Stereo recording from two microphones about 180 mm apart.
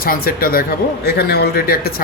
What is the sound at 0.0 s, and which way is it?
Speech, 55° left (ahead or behind).